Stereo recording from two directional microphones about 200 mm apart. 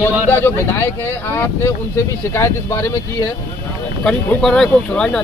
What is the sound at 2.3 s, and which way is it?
Speech, 15° left (ahead or behind).